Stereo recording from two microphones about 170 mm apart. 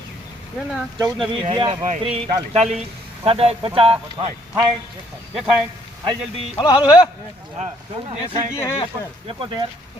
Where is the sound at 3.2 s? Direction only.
35° right (ahead or behind).